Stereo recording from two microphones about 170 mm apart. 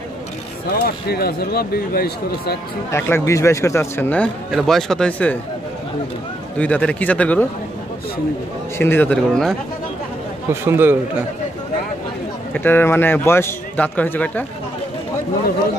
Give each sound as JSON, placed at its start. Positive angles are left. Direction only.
{"t": 0.7, "sound": "speech", "side_deg": 65}
{"t": 2.9, "sound": "a man's voice", "side_deg": 15}
{"t": 6.6, "sound": "a man's voice", "side_deg": 5}
{"t": 8.7, "sound": "a man's voice", "side_deg": 15}
{"t": 10.5, "sound": "a man's voice", "side_deg": -15}
{"t": 12.5, "sound": "a man's voice", "side_deg": 10}